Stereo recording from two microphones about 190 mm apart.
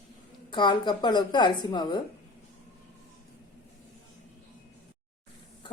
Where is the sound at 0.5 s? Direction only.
25° left (ahead or behind).